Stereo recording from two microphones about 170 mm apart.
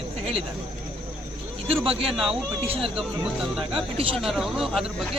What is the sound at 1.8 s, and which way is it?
Speech, 35° right (ahead or behind).